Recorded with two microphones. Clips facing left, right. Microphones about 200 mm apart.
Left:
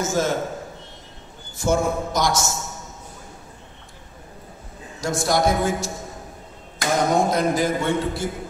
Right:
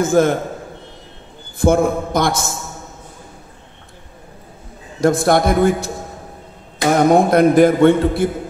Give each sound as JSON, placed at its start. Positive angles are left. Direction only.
{"t": 0.0, "sound": "speech", "side_deg": -55}
{"t": 1.6, "sound": "speech", "side_deg": -55}
{"t": 5.0, "sound": "speech", "side_deg": -55}